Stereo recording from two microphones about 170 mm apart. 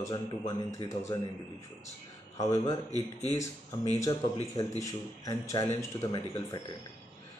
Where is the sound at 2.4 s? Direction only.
20° left (ahead or behind).